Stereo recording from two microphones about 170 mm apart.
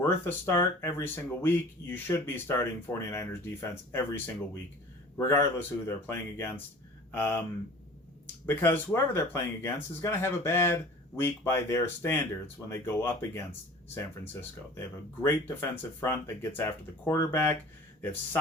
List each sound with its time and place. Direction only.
0.0 s speech: 15° left (ahead or behind)
8.4 s speech: 10° left (ahead or behind)